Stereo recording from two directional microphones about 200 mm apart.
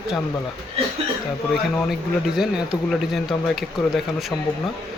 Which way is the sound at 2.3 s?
Centre (ahead or behind).